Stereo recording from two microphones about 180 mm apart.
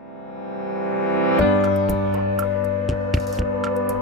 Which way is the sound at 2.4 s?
Centre (ahead or behind).